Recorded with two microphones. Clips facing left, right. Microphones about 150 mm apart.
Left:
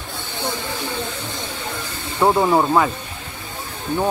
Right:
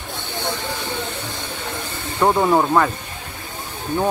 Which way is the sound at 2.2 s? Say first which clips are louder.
Even; 5° left (ahead or behind).